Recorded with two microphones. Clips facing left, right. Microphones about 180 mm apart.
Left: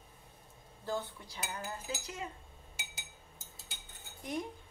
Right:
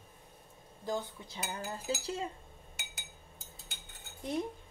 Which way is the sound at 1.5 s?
30° right (ahead or behind).